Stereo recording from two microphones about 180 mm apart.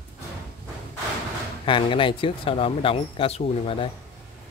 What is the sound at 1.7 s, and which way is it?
Speech, 30° left (ahead or behind).